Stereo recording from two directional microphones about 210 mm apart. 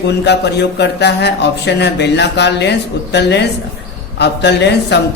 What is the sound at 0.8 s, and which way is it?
Speech, 55° left (ahead or behind).